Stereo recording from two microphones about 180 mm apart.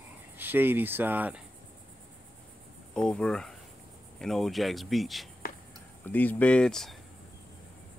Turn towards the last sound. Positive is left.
turn(degrees=0)  # may be behind; listen again after turning